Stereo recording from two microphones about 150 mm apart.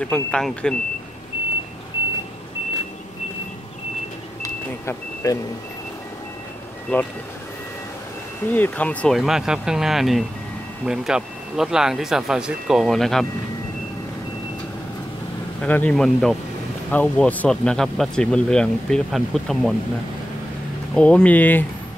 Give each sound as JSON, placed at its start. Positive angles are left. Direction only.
{"t": 0.0, "sound": "speech", "side_deg": 5}
{"t": 4.4, "sound": "vehicle", "side_deg": 20}
{"t": 6.9, "sound": "speech", "side_deg": 10}
{"t": 8.5, "sound": "speech", "side_deg": 10}
{"t": 9.2, "sound": "speech", "side_deg": -5}
{"t": 15.6, "sound": "speech", "side_deg": 10}
{"t": 20.9, "sound": "speech", "side_deg": 5}